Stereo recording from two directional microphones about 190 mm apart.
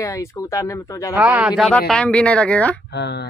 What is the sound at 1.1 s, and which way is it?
Speech, 10° right (ahead or behind).